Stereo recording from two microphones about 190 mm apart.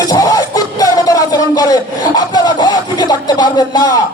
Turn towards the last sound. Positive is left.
turn(degrees=20)  # may be behind; listen again after turning